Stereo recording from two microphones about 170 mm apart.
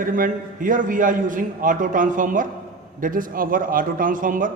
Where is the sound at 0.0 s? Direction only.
50° right (ahead or behind).